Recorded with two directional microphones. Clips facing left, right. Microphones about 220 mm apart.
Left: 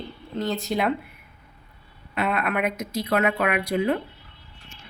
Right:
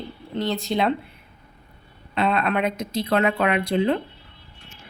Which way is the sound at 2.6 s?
30° right (ahead or behind).